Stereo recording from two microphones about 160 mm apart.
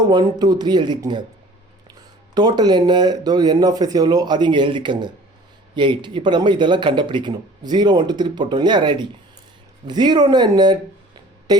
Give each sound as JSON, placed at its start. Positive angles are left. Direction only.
{"t": 0.1, "sound": "speech", "side_deg": -25}
{"t": 2.3, "sound": "speech", "side_deg": -25}